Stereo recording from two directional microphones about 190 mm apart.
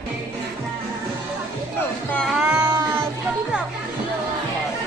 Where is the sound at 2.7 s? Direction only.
15° right (ahead or behind).